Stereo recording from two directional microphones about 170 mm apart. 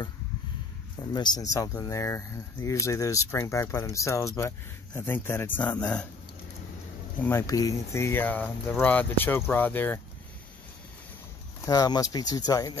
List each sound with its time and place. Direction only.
1.1 s speech: 25° left (ahead or behind); by 6.0 s 10° left (ahead or behind)
7.2 s speech: 15° left (ahead or behind)
11.6 s speech: 20° left (ahead or behind)